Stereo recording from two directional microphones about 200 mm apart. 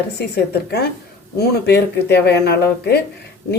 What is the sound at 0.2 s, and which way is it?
A woman's voice, 55° left (ahead or behind).